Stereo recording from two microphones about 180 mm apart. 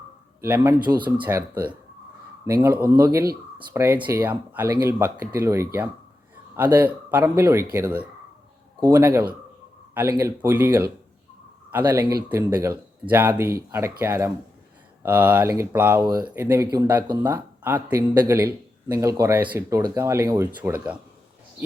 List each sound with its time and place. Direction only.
0.4 s speech: 15° right (ahead or behind)
2.9 s speech: 20° right (ahead or behind)